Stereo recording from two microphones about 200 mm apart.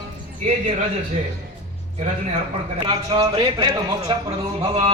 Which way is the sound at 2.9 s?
20° right (ahead or behind).